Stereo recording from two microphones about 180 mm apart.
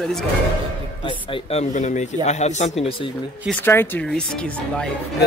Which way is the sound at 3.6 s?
10° left (ahead or behind).